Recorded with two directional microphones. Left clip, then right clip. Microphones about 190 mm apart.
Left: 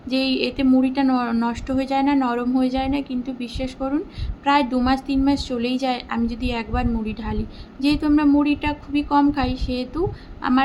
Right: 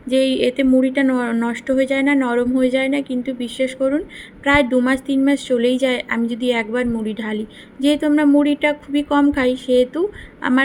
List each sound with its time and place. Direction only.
0.1 s a woman's voice: 15° right (ahead or behind)